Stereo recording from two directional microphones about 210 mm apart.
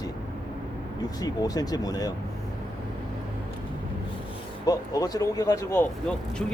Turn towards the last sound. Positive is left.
turn(degrees=5)  # may be behind; listen again after turning